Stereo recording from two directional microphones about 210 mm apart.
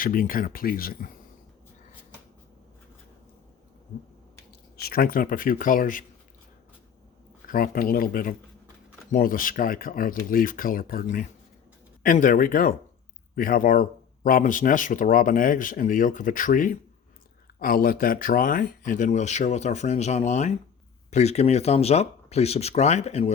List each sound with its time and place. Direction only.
0.0 s speech: 40° left (ahead or behind)
4.8 s speech: 45° left (ahead or behind)
7.4 s speech: 40° left (ahead or behind)